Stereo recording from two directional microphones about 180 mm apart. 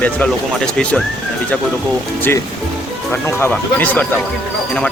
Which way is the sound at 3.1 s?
10° left (ahead or behind).